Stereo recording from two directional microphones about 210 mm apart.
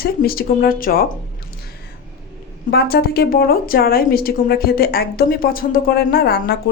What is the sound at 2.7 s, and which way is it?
A woman's voice, 50° left (ahead or behind).